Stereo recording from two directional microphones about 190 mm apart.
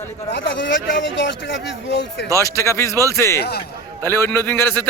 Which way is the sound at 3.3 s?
60° left (ahead or behind).